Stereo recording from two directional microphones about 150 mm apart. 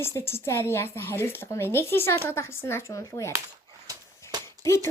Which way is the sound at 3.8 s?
25° right (ahead or behind).